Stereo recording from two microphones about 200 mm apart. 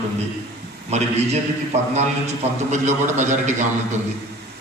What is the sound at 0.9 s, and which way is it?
A man's voice, 35° right (ahead or behind).